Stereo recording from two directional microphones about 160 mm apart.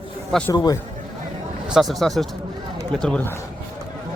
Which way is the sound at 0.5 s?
25° left (ahead or behind).